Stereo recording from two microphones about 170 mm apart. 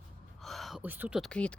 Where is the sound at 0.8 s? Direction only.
10° right (ahead or behind).